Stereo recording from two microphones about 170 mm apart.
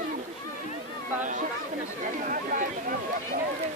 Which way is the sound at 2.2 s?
50° right (ahead or behind).